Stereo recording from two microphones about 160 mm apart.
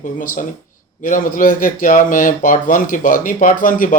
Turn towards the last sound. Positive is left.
turn(degrees=60)  # may be behind; listen again after turning